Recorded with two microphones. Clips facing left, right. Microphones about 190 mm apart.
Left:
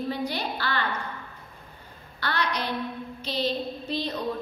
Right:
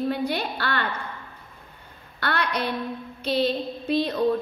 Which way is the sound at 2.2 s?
55° right (ahead or behind).